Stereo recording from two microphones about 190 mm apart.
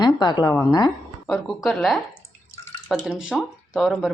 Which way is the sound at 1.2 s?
Centre (ahead or behind).